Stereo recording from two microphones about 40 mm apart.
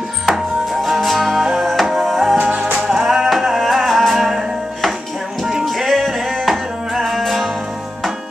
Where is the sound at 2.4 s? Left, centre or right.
Right.